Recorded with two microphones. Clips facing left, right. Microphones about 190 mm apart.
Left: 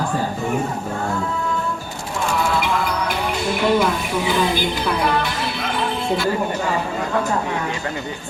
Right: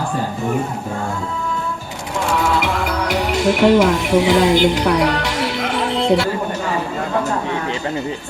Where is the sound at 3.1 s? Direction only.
90° right.